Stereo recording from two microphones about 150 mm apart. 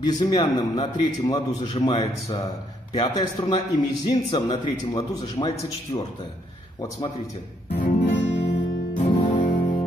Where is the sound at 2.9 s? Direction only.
30° left (ahead or behind).